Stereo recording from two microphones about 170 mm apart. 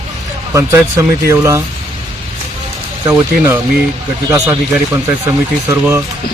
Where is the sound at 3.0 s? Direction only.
15° right (ahead or behind).